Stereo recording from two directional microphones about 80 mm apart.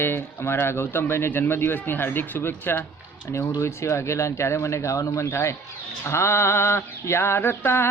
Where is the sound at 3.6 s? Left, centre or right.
Left.